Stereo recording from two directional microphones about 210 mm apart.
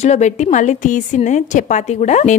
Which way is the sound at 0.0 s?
35° left (ahead or behind).